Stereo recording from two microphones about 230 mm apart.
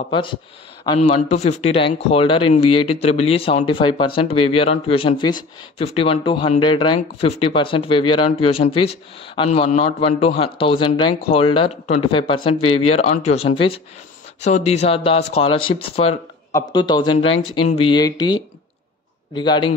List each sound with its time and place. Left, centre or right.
0.1 s speech: left